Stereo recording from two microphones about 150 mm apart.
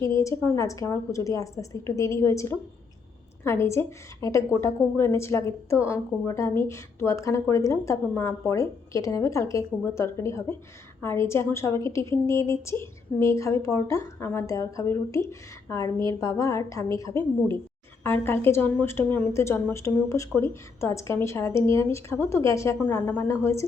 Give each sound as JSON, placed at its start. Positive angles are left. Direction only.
{"t": 0.0, "sound": "a woman's voice", "side_deg": 20}